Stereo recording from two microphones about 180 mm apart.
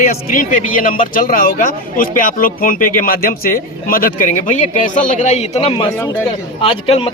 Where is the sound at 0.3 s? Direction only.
50° left (ahead or behind).